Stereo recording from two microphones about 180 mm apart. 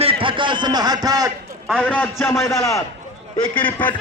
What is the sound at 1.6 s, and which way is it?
Speech, 5° left (ahead or behind).